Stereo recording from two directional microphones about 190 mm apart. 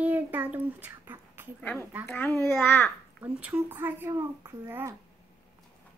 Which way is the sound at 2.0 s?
10° left (ahead or behind).